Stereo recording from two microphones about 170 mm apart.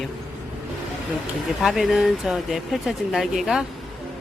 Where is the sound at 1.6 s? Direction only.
Centre (ahead or behind).